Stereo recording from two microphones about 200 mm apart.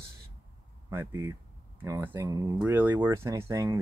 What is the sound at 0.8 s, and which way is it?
Speech, 10° right (ahead or behind).